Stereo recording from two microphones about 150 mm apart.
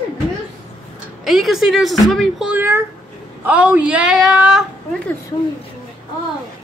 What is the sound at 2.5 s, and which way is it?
Speech, 15° right (ahead or behind).